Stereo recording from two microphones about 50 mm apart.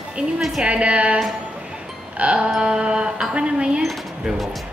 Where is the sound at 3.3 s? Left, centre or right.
Right.